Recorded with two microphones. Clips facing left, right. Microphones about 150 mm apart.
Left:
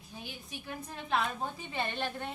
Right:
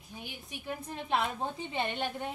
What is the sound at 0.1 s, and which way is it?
A woman's voice, 15° right (ahead or behind).